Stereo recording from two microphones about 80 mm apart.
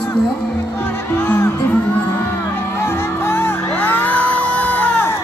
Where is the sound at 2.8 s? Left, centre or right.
Left.